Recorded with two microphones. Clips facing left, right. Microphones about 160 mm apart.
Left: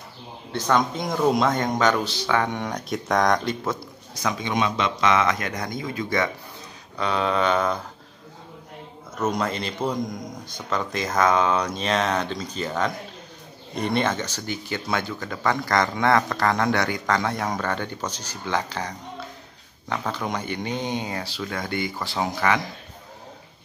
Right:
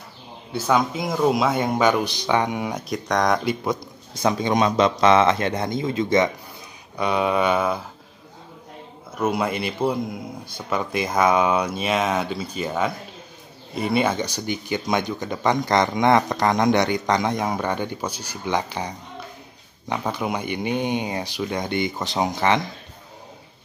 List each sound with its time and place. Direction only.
0.5 s speech: 5° right (ahead or behind)
4.2 s speech: 35° right (ahead or behind); by 7.8 s 10° right (ahead or behind)
9.1 s speech: 10° right (ahead or behind)